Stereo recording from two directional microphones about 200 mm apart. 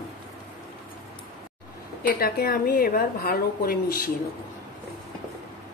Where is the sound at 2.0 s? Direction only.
45° left (ahead or behind).